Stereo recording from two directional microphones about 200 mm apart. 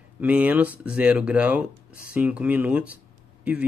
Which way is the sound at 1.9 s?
45° left (ahead or behind).